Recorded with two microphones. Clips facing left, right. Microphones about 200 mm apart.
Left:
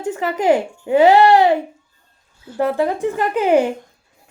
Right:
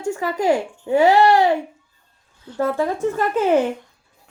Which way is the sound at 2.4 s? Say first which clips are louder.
Left 3 dB; 10° left (ahead or behind).